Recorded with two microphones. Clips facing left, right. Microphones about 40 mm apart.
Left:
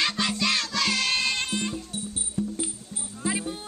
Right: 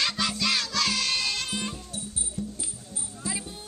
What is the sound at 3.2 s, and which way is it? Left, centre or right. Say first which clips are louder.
Music: left 7 dB; left.